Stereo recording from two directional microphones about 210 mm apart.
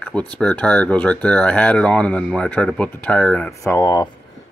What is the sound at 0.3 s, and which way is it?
Speech, 5° left (ahead or behind).